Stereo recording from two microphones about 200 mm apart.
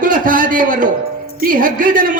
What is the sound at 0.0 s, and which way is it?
A man's voice, 45° right (ahead or behind).